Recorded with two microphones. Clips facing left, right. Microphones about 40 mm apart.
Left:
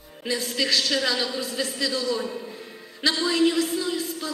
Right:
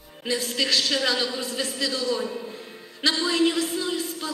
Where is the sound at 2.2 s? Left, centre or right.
Centre.